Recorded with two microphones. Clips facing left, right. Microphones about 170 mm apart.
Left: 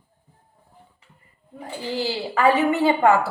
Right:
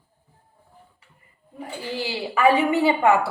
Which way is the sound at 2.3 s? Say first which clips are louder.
Even; 15° right (ahead or behind).